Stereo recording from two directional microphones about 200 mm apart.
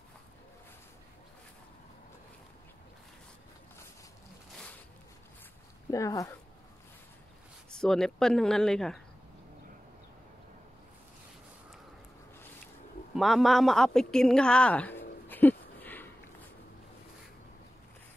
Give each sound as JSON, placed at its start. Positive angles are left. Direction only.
{"t": 5.9, "sound": "speech", "side_deg": 15}
{"t": 7.8, "sound": "speech", "side_deg": 5}
{"t": 13.1, "sound": "a sound", "side_deg": 0}